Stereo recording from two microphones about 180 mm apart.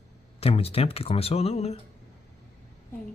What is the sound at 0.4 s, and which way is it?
Speech, 35° left (ahead or behind).